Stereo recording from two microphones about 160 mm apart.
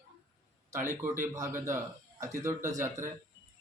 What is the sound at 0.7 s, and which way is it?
Speech, 15° right (ahead or behind).